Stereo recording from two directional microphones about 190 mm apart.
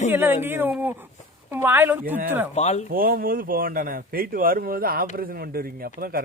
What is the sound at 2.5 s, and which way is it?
Speech, 35° left (ahead or behind).